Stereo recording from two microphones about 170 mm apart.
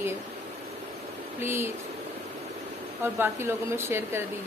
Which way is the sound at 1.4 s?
15° right (ahead or behind).